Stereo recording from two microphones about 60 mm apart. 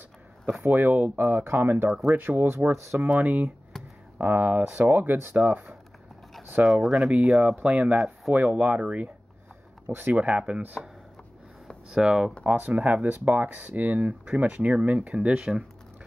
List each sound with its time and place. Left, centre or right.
0.6 s speech: right
3.1 s speech: right
3.8 s a sound: centre
4.2 s speech: right
6.6 s speech: centre
7.1 s speech: centre
11.9 s speech: centre
12.5 s speech: right